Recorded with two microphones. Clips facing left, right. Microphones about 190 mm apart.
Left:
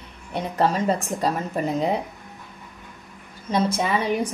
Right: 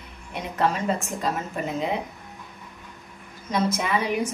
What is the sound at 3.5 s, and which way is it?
Speech, 30° left (ahead or behind).